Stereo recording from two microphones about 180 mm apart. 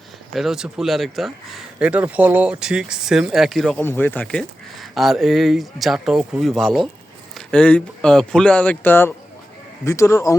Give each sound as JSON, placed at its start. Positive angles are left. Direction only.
{"t": 0.3, "sound": "speech", "side_deg": 0}
{"t": 3.8, "sound": "speech", "side_deg": 10}